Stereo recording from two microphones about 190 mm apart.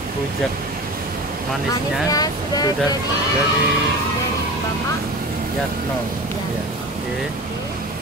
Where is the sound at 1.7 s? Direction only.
20° left (ahead or behind).